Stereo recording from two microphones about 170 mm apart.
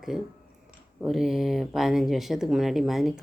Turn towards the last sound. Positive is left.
turn(degrees=0)  # may be behind; listen again after turning